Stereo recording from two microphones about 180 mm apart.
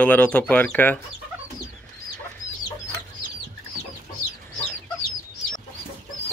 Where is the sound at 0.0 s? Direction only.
10° left (ahead or behind).